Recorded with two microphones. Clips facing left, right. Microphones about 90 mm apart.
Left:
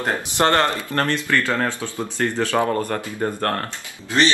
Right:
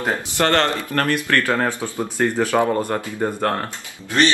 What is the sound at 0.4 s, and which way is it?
Speech, 20° left (ahead or behind).